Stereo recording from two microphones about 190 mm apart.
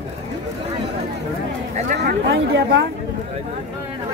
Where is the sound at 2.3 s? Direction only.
70° right (ahead or behind).